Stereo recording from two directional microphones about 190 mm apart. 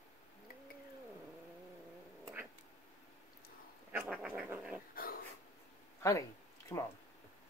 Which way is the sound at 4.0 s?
5° right (ahead or behind).